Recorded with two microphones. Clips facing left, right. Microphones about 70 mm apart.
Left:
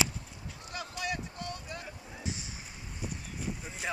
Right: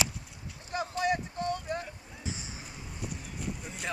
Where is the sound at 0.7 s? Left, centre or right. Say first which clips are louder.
Right 7 dB; right.